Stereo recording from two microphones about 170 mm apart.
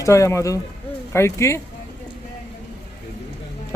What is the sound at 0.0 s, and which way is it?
A man's voice, 15° left (ahead or behind).